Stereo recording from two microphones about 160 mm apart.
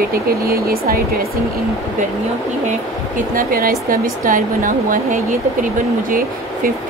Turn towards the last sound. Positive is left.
turn(degrees=-60)  # may be behind; listen again after turning